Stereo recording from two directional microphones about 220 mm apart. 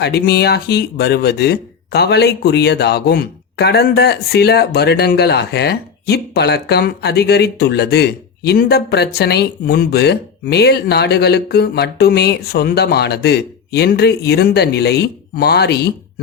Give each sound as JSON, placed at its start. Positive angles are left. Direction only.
{"t": 0.0, "sound": "speech", "side_deg": 50}